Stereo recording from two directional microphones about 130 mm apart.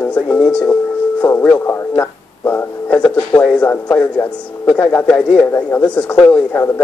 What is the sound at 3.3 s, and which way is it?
Speech, 15° left (ahead or behind).